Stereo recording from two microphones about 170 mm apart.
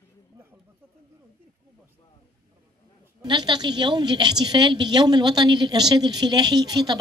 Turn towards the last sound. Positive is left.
turn(degrees=-25)  # may be behind; listen again after turning